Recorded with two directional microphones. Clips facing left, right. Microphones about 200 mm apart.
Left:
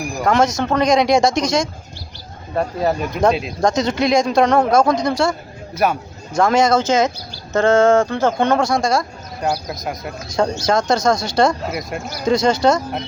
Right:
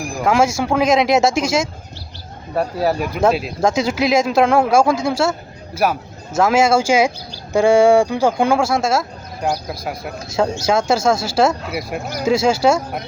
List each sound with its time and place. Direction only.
0.0 s speech: 5° right (ahead or behind)